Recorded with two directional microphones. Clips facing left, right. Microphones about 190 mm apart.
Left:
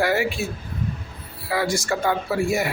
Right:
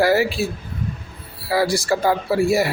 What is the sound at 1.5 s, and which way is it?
A man's voice, 35° right (ahead or behind).